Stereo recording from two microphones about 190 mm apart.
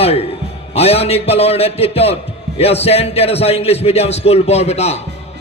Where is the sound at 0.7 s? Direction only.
30° left (ahead or behind).